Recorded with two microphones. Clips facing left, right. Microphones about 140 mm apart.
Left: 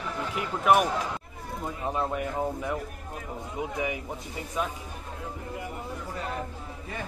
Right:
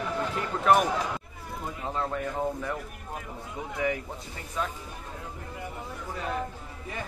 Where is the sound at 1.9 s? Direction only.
15° left (ahead or behind).